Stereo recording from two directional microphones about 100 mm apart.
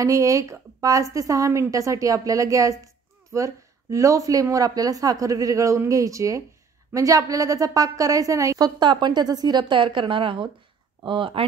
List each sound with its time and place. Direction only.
0.0 s speech: 35° right (ahead or behind); by 11.4 s 60° right (ahead or behind)